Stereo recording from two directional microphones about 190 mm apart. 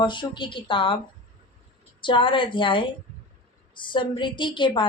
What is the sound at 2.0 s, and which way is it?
Speech, 25° left (ahead or behind).